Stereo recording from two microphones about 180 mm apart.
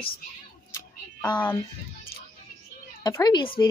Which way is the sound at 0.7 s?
25° left (ahead or behind).